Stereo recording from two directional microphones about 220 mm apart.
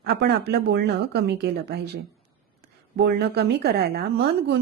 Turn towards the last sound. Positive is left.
turn(degrees=-50)  # may be behind; listen again after turning